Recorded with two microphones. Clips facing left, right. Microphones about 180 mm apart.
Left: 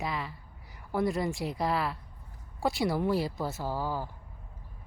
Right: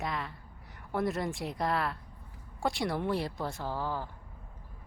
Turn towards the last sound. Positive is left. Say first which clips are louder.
# left 2 dB
turn(degrees=10)  # may be behind; listen again after turning